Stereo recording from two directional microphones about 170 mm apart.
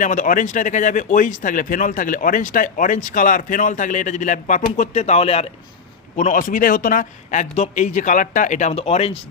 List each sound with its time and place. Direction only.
0.0 s speech: 50° left (ahead or behind)
6.1 s speech: 50° left (ahead or behind)